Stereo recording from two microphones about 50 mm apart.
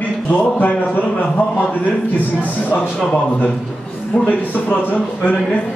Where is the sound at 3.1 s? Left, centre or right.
Left.